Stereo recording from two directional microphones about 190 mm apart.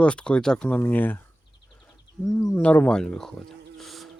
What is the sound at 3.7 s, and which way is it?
Music, centre (ahead or behind).